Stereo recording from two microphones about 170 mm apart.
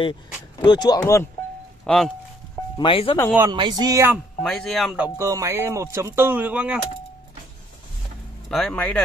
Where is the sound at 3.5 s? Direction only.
25° right (ahead or behind).